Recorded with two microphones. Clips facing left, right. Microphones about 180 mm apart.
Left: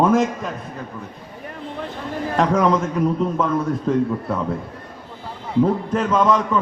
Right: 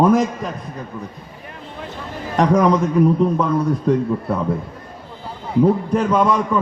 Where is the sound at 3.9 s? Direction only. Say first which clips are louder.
Right 2 dB; 15° right (ahead or behind).